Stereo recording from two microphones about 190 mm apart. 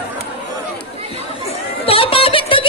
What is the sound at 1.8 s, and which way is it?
Music, 30° left (ahead or behind).